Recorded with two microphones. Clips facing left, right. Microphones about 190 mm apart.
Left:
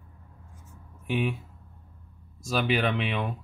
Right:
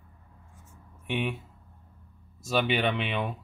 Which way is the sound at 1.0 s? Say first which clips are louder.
Left 2 dB; centre (ahead or behind).